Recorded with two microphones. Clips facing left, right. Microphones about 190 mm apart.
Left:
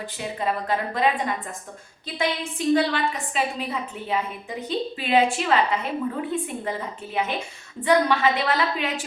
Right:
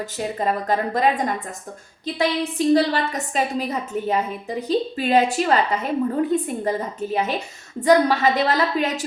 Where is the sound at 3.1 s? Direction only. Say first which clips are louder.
Right 4 dB; 40° right (ahead or behind).